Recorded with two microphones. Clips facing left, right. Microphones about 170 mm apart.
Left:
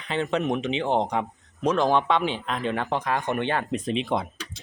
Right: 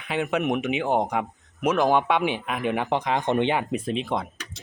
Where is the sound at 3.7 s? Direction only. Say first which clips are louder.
Left 1 dB; centre (ahead or behind).